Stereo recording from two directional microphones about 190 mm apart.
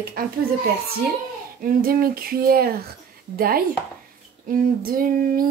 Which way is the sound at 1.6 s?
50° right (ahead or behind).